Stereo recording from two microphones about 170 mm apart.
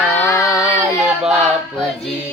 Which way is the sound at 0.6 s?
5° right (ahead or behind).